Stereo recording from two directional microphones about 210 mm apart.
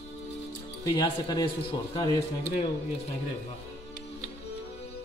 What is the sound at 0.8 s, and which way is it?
A man's voice, 20° left (ahead or behind).